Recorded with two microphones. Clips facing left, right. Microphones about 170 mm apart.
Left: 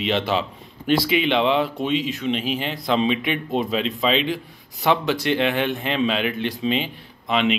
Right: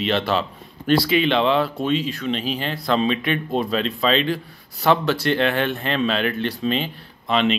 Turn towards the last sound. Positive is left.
turn(degrees=15)  # may be behind; listen again after turning